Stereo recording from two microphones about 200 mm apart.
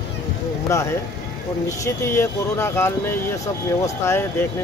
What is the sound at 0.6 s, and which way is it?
Speech, 15° left (ahead or behind).